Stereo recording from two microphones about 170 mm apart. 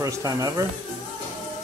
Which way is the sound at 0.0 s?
20° right (ahead or behind).